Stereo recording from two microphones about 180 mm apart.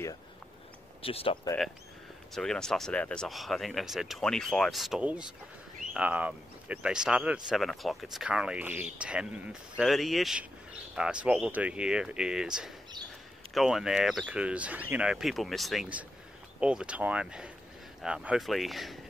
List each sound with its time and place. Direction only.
1.0 s speech: 30° left (ahead or behind)
2.3 s speech: 5° left (ahead or behind)